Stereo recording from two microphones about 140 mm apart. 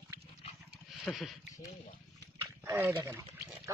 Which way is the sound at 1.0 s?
Centre (ahead or behind).